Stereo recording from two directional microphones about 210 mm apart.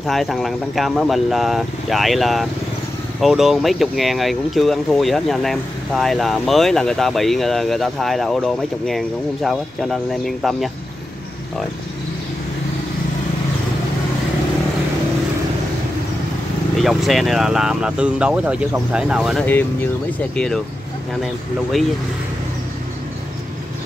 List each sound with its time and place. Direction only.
0.0 s speech: centre (ahead or behind)
16.7 s speech: centre (ahead or behind)
19.4 s speech: 10° left (ahead or behind)